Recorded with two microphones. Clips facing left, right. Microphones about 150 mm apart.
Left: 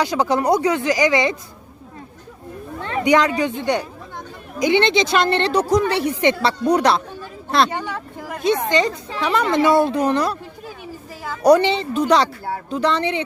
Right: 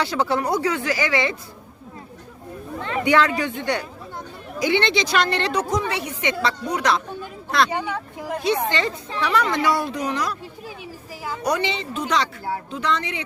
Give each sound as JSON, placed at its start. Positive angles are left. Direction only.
{"t": 0.0, "sound": "speech", "side_deg": 15}
{"t": 2.8, "sound": "a woman's voice", "side_deg": 20}
{"t": 8.4, "sound": "a woman's voice", "side_deg": 20}
{"t": 11.4, "sound": "speech", "side_deg": 35}